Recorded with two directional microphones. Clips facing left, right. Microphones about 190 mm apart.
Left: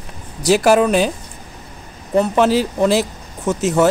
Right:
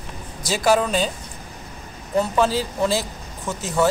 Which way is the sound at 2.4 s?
70° left (ahead or behind).